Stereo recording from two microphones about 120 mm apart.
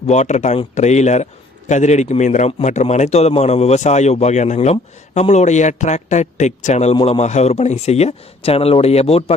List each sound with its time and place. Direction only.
0.1 s a man's voice: 70° left (ahead or behind)
2.5 s a man's voice: 70° left (ahead or behind)
6.9 s speech: 55° left (ahead or behind)